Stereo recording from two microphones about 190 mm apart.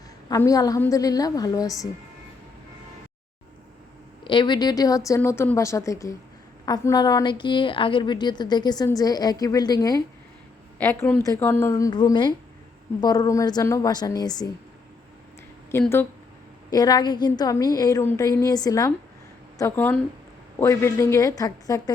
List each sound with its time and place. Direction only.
0.3 s a woman's voice: 20° left (ahead or behind)
4.2 s a woman's voice: 25° left (ahead or behind)
15.7 s a woman's voice: 15° left (ahead or behind)